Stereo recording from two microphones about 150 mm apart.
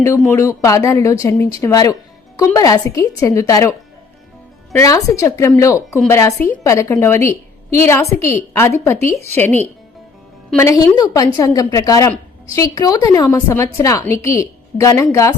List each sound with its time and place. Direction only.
0.3 s a woman's voice: 20° left (ahead or behind)
10.6 s speech: 20° left (ahead or behind)